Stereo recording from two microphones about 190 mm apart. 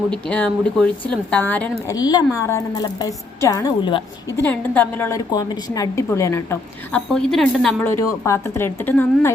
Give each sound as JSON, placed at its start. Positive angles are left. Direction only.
{"t": 0.1, "sound": "a woman's voice", "side_deg": 5}
{"t": 1.9, "sound": "a woman's voice", "side_deg": 20}
{"t": 4.4, "sound": "a woman's voice", "side_deg": 10}
{"t": 7.1, "sound": "speech", "side_deg": 0}
{"t": 7.9, "sound": "a woman's voice", "side_deg": 15}